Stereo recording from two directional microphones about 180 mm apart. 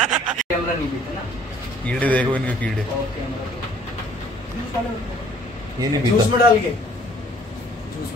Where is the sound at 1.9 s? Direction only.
10° left (ahead or behind).